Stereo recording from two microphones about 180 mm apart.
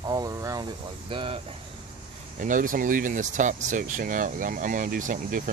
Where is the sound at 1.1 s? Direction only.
30° right (ahead or behind).